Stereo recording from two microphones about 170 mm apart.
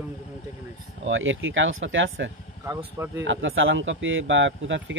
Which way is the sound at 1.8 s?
90° right.